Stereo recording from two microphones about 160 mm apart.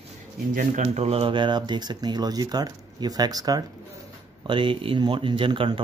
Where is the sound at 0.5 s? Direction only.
50° right (ahead or behind).